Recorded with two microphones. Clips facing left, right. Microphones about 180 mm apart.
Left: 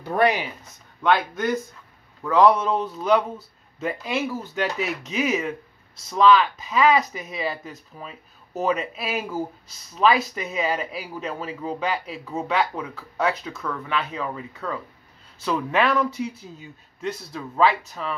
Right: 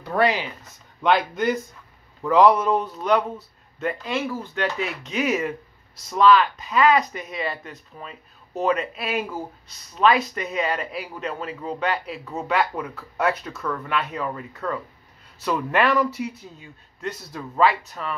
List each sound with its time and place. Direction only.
1.0 s a man's voice: 15° right (ahead or behind); by 18.1 s centre (ahead or behind)